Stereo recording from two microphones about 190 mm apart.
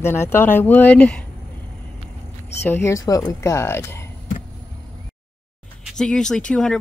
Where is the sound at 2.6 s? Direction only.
10° left (ahead or behind).